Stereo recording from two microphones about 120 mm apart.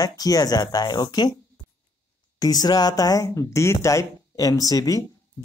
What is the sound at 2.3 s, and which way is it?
Speech, 30° left (ahead or behind).